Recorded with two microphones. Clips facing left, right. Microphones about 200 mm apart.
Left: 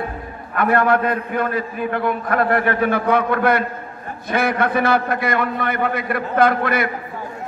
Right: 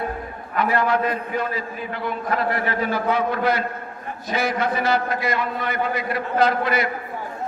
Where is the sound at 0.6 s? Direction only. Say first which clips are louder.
Left 4 dB; 55° left (ahead or behind).